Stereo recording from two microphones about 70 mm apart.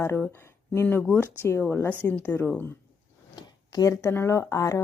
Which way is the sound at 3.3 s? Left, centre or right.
Left.